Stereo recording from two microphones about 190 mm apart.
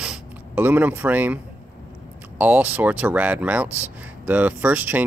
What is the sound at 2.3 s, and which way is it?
Speech, 10° right (ahead or behind).